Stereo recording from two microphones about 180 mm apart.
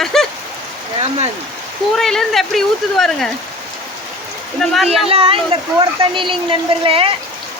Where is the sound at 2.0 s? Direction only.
Centre (ahead or behind).